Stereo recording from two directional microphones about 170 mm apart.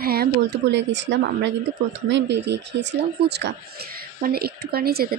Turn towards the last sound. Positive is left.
turn(degrees=-65)  # may be behind; listen again after turning